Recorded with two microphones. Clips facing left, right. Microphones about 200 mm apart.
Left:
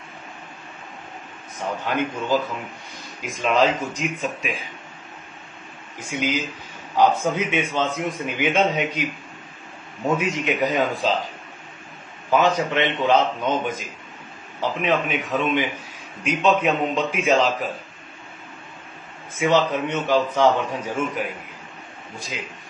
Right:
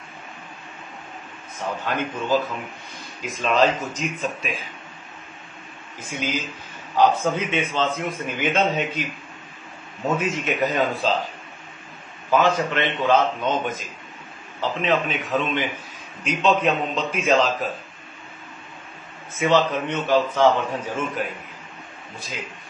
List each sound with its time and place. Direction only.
1.9 s a man's voice: 15° left (ahead or behind)
6.0 s a man's voice: 15° left (ahead or behind)
10.1 s a man's voice: 15° left (ahead or behind)
12.4 s a man's voice: 15° left (ahead or behind)
19.3 s a man's voice: 10° left (ahead or behind)